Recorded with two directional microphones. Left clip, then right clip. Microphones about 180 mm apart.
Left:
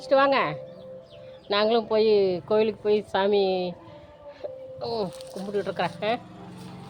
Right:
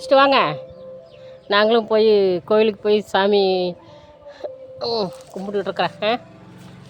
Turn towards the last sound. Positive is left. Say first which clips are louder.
# right 6 dB
turn(degrees=-45)  # may be behind; listen again after turning